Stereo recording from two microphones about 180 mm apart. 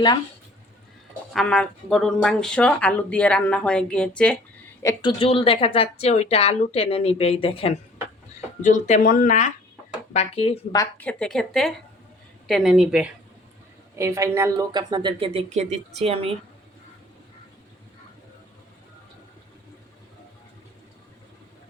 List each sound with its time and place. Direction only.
1.3 s speech: centre (ahead or behind)
4.8 s speech: 15° left (ahead or behind)
5.2 s a woman's voice: 30° left (ahead or behind)
8.6 s speech: 40° left (ahead or behind)
10.1 s a woman's voice: 35° left (ahead or behind)
10.9 s speech: 5° left (ahead or behind)
14.0 s speech: 15° right (ahead or behind); by 16.3 s 35° right (ahead or behind)